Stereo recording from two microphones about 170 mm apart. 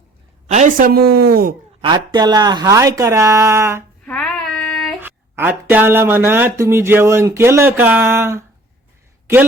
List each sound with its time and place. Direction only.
0.4 s speech: 45° right (ahead or behind); by 1.5 s 60° right (ahead or behind)
1.8 s speech: 25° right (ahead or behind)
4.0 s child singing: 5° left (ahead or behind)
4.9 s speech: 10° right (ahead or behind)